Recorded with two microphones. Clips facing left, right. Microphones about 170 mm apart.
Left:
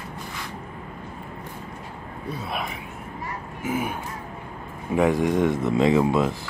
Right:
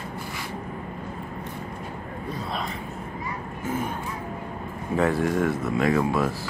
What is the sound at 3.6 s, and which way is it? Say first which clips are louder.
Speech: left 2 dB; 10° left (ahead or behind).